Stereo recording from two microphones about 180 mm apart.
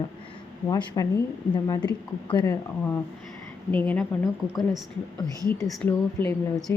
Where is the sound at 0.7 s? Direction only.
20° left (ahead or behind).